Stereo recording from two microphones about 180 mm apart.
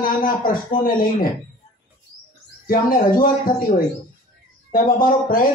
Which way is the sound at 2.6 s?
50° left (ahead or behind).